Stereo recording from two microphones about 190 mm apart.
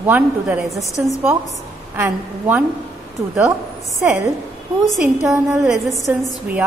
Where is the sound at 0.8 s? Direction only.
15° left (ahead or behind).